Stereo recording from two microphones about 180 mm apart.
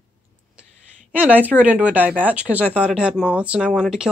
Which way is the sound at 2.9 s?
5° right (ahead or behind).